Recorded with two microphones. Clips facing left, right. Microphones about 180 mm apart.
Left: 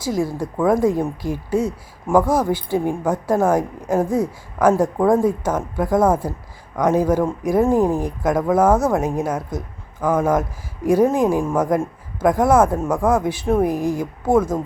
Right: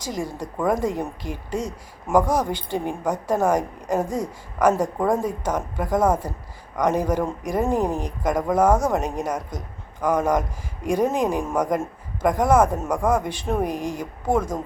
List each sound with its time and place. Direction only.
0.0 s speech: 10° left (ahead or behind)
4.7 s speech: 10° left (ahead or behind)
7.6 s speech: 15° right (ahead or behind)
8.0 s speech: 10° left (ahead or behind)